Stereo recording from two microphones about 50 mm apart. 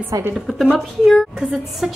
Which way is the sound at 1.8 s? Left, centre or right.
Centre.